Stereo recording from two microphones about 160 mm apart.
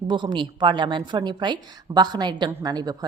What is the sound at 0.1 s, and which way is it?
Speech, 30° right (ahead or behind).